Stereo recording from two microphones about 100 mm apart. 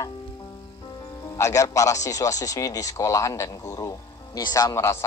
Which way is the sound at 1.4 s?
35° left (ahead or behind).